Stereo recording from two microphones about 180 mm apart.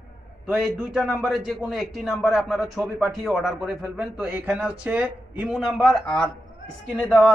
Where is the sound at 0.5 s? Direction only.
Centre (ahead or behind).